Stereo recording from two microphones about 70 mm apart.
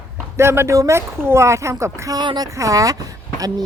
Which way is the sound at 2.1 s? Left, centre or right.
Right.